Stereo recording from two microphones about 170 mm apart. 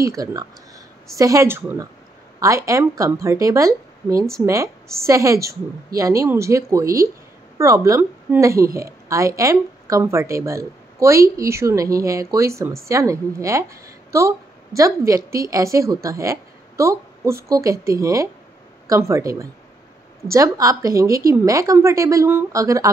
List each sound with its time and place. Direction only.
0.0 s a woman's voice: 20° right (ahead or behind)